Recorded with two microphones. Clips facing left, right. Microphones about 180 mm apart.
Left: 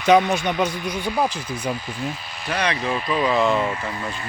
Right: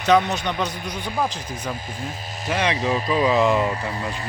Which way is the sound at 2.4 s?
20° right (ahead or behind).